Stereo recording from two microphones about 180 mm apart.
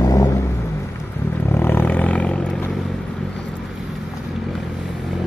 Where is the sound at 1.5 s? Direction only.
10° left (ahead or behind).